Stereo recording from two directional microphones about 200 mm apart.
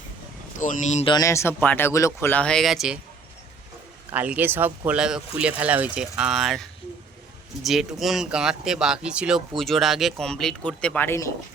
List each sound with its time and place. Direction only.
0.6 s speech: 40° left (ahead or behind)
1.1 s speech: 15° left (ahead or behind); by 3.0 s centre (ahead or behind)
4.1 s speech: 10° right (ahead or behind); by 11.3 s 10° left (ahead or behind)